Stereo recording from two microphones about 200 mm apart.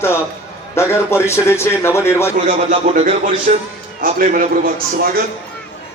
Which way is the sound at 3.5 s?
35° right (ahead or behind).